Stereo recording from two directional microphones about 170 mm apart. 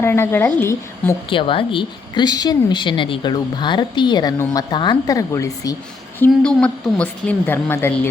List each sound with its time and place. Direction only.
0.0 s a woman's voice: 15° left (ahead or behind)
1.3 s a woman's voice: 30° left (ahead or behind); by 8.1 s 15° left (ahead or behind)